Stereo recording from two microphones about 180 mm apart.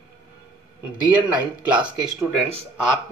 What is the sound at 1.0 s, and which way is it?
Speech, 10° right (ahead or behind).